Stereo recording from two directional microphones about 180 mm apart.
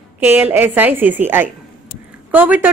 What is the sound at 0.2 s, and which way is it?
Speech, 10° right (ahead or behind).